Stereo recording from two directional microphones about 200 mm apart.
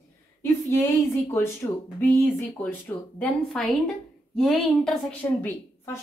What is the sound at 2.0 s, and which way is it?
A woman's voice, 10° left (ahead or behind).